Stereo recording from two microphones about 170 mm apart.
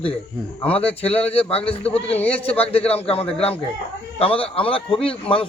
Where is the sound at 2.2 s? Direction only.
10° left (ahead or behind).